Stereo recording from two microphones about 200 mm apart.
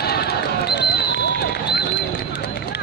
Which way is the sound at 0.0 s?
50° left (ahead or behind).